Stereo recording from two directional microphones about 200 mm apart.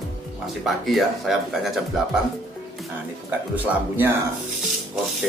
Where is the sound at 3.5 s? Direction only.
10° right (ahead or behind).